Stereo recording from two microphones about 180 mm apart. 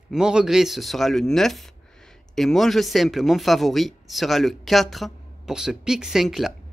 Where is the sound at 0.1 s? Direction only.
5° right (ahead or behind).